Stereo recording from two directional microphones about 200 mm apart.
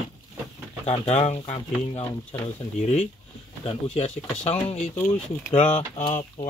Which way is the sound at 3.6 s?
30° left (ahead or behind).